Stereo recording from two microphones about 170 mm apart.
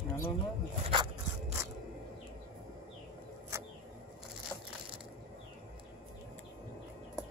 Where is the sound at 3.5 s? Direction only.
15° right (ahead or behind).